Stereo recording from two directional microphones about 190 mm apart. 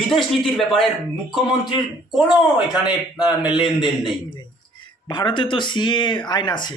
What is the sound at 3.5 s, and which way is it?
Speech, 25° left (ahead or behind).